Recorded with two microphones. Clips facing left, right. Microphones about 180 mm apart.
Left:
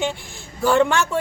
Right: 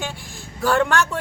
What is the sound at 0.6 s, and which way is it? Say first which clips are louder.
Speech: left 3 dB; 15° left (ahead or behind).